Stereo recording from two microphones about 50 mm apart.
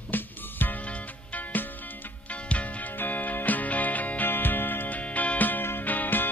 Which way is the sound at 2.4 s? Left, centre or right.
Left.